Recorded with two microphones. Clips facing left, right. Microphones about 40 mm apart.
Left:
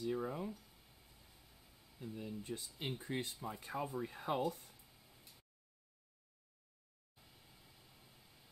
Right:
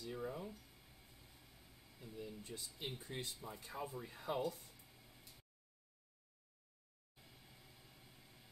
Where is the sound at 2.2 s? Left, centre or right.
Left.